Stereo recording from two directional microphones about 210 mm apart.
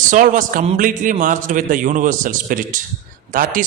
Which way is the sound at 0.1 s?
40° right (ahead or behind).